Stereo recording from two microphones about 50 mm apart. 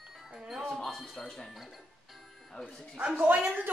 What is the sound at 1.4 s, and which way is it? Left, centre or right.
Speech, centre.